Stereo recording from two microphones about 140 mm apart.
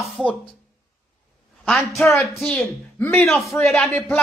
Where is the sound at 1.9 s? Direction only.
15° left (ahead or behind).